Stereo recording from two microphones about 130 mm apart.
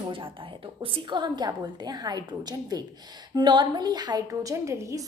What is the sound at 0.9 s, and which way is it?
A woman's voice, 35° right (ahead or behind).